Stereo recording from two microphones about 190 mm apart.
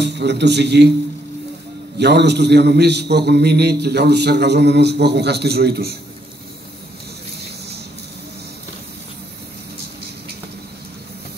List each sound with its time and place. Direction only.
0.0 s a man's voice: 65° right (ahead or behind)
2.0 s a man's voice: 60° right (ahead or behind)